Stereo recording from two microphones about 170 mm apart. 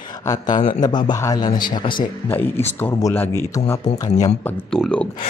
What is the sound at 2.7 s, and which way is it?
Speech, 10° left (ahead or behind).